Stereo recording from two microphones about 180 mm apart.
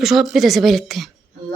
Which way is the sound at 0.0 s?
Centre (ahead or behind).